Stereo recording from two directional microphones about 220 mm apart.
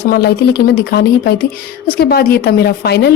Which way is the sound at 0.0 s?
45° left (ahead or behind).